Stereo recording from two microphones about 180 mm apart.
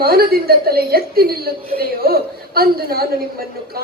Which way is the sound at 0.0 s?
55° right (ahead or behind).